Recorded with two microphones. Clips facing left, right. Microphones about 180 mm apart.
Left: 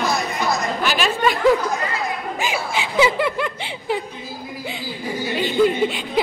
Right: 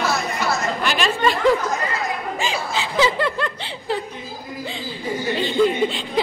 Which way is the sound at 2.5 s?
10° left (ahead or behind).